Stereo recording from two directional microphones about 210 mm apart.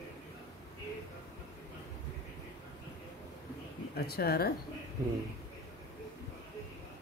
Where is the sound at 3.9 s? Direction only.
45° left (ahead or behind).